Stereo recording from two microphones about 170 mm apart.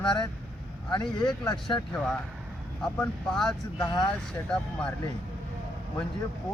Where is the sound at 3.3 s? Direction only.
5° left (ahead or behind).